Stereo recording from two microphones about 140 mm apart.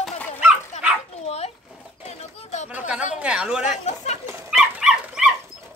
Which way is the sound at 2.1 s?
55° left (ahead or behind).